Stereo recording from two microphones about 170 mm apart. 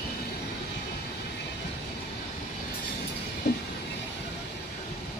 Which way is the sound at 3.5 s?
80° left.